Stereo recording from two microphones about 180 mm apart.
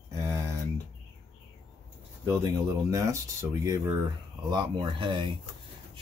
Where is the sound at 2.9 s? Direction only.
15° right (ahead or behind).